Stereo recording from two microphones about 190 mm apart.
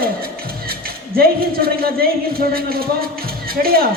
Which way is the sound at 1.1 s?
50° right (ahead or behind).